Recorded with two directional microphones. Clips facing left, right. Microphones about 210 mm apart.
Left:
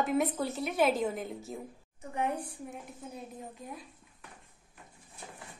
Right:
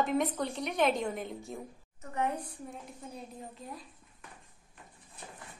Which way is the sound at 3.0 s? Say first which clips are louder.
Left 1 dB; 5° left (ahead or behind).